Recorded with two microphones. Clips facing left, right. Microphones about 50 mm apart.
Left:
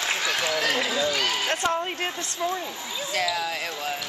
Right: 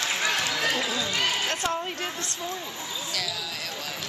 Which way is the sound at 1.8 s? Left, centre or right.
Left.